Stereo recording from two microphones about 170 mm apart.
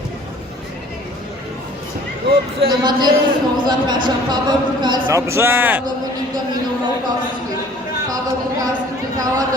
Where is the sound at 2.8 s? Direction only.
25° right (ahead or behind).